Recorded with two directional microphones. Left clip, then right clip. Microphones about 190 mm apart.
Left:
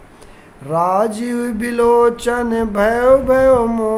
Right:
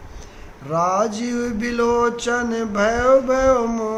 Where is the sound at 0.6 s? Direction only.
55° left (ahead or behind).